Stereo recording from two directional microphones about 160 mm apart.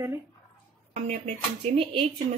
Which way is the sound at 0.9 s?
40° right (ahead or behind).